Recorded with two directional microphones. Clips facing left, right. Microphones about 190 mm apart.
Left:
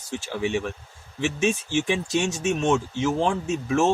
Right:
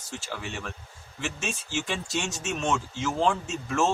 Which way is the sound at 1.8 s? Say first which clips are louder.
Left 7 dB; 15° left (ahead or behind).